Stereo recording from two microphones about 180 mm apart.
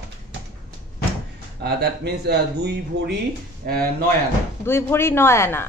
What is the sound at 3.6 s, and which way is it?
Speech, 50° right (ahead or behind).